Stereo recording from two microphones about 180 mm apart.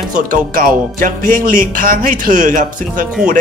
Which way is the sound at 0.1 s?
45° right (ahead or behind).